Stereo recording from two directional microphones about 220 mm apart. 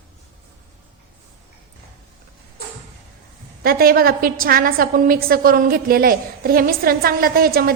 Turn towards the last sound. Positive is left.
turn(degrees=-45)  # may be behind; listen again after turning